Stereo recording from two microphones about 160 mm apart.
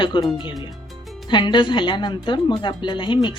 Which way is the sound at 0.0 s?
30° left (ahead or behind).